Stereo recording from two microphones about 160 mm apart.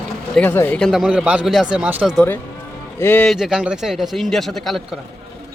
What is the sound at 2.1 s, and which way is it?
A man's voice, 10° left (ahead or behind).